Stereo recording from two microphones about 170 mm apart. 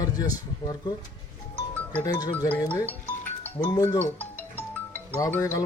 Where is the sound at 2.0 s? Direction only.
20° left (ahead or behind).